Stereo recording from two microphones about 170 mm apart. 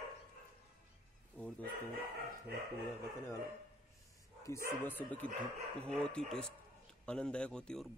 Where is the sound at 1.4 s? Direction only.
10° left (ahead or behind).